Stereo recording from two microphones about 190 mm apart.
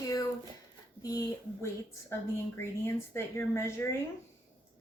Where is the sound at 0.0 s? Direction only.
20° left (ahead or behind).